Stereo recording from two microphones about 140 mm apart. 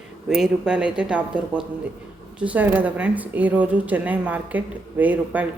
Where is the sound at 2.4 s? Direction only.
10° right (ahead or behind).